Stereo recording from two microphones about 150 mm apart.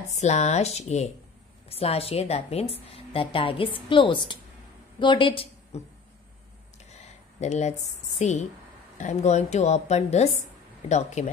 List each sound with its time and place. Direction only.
0.1 s a woman's voice: 50° left (ahead or behind)
6.9 s a sound: 50° left (ahead or behind)
8.2 s a woman's voice: 50° left (ahead or behind)